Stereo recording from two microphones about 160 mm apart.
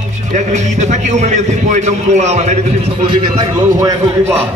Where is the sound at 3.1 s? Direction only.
25° right (ahead or behind).